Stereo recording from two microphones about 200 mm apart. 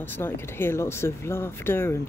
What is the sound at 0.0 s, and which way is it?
Speech, 10° left (ahead or behind).